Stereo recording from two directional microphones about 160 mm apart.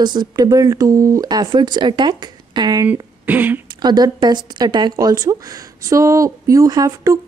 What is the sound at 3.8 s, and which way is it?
A woman's voice, 25° right (ahead or behind).